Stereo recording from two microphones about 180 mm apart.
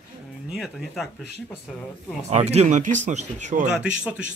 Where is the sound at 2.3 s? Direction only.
35° right (ahead or behind).